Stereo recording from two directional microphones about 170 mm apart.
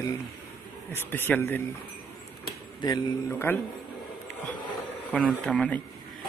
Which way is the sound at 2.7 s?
25° left (ahead or behind).